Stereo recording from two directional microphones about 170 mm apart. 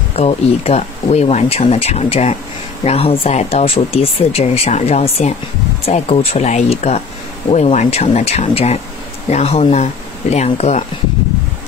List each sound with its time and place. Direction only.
0.1 s speech: 35° left (ahead or behind)